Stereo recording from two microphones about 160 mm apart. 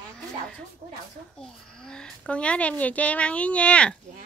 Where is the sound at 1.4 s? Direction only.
5° left (ahead or behind).